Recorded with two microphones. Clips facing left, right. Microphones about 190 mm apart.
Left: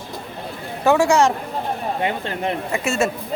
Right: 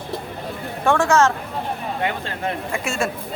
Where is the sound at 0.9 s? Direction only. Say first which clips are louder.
Left 2 dB; 10° left (ahead or behind).